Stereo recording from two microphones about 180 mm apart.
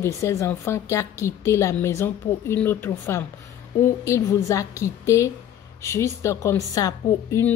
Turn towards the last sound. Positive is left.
turn(degrees=20)  # may be behind; listen again after turning